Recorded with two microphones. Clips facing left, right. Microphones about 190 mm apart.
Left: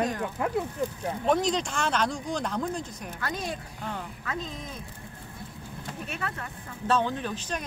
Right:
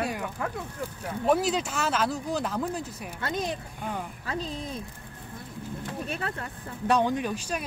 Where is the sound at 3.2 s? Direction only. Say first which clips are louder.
Right 3 dB; 20° right (ahead or behind).